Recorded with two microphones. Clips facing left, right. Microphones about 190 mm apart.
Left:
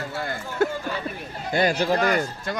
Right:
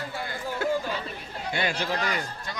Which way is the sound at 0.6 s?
50° left (ahead or behind).